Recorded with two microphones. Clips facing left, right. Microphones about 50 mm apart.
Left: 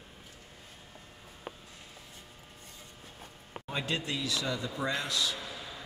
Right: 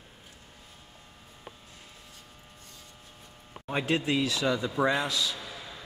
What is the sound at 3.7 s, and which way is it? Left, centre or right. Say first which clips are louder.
Speech: right 6 dB; right.